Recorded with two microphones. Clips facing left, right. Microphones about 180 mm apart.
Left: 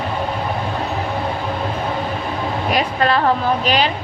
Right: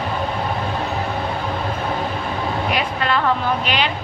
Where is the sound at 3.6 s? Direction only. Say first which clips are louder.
Left 4 dB; 40° left (ahead or behind).